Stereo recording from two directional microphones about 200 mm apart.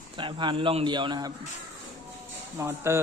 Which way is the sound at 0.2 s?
25° right (ahead or behind).